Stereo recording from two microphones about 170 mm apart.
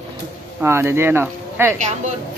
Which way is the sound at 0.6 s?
15° right (ahead or behind).